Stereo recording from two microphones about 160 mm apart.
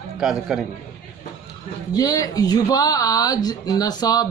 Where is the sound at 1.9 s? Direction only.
20° left (ahead or behind).